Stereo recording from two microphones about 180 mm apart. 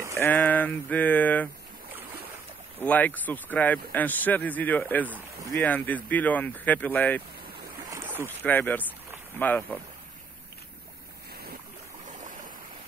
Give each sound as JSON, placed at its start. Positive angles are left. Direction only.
{"t": 0.2, "sound": "speech", "side_deg": 10}
{"t": 2.8, "sound": "speech", "side_deg": 10}
{"t": 7.9, "sound": "boat", "side_deg": -15}
{"t": 8.3, "sound": "speech", "side_deg": 10}
{"t": 12.1, "sound": "stream", "side_deg": -45}